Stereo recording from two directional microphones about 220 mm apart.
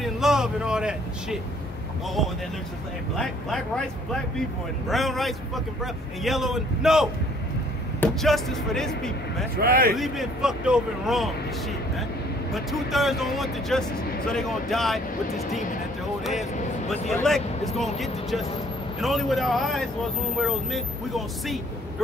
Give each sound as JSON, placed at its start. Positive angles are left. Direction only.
{"t": 0.0, "sound": "speech", "side_deg": 0}
{"t": 3.2, "sound": "speech", "side_deg": 5}
{"t": 9.6, "sound": "speech", "side_deg": -45}
{"t": 9.9, "sound": "speech", "side_deg": 0}
{"t": 12.5, "sound": "speech", "side_deg": 0}
{"t": 17.1, "sound": "speech", "side_deg": 0}